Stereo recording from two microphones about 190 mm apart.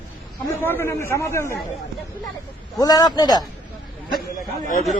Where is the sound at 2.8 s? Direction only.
20° left (ahead or behind).